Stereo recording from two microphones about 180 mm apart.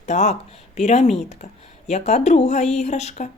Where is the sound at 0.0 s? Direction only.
40° left (ahead or behind).